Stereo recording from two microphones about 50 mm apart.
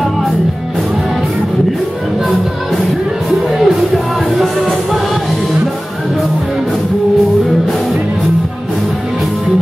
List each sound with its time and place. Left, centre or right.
3.6 s music: centre